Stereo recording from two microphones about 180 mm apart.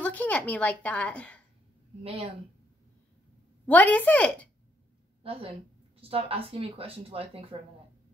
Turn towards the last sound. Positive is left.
turn(degrees=-30)  # may be behind; listen again after turning